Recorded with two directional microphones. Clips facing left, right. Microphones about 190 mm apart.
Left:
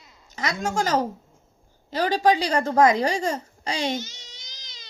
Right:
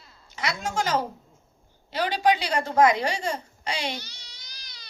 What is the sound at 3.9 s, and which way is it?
Baby cry, 20° left (ahead or behind).